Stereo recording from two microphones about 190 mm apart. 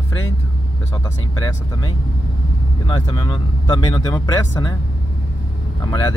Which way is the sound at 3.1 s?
20° left (ahead or behind).